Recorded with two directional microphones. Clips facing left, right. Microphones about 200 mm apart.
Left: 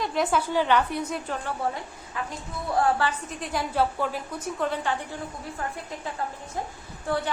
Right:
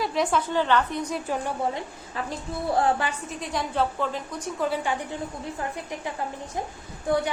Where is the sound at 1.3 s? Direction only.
15° right (ahead or behind).